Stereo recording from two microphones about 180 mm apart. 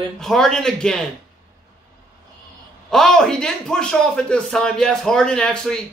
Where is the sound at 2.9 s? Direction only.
5° left (ahead or behind).